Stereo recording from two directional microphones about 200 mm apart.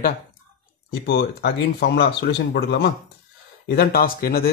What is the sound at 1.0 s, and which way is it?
Speech, 55° left (ahead or behind).